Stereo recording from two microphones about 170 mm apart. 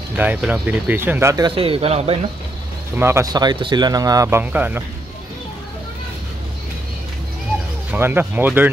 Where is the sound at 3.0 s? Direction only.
15° right (ahead or behind).